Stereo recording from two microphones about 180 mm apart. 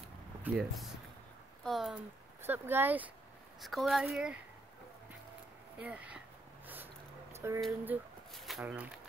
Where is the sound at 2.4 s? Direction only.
10° right (ahead or behind).